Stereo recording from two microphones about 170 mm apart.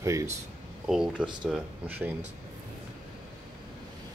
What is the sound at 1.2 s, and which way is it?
Speech, 5° right (ahead or behind).